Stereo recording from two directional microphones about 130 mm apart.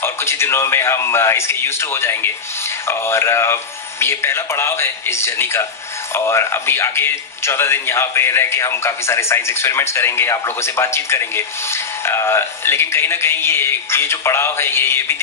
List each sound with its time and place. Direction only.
0.0 s speech: 20° left (ahead or behind)